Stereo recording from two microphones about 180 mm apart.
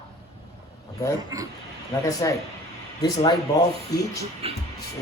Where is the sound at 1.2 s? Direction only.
20° right (ahead or behind).